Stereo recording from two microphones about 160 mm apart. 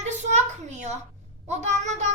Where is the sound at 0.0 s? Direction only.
45° right (ahead or behind).